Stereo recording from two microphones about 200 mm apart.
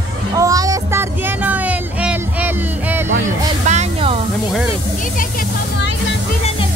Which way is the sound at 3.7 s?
30° right (ahead or behind).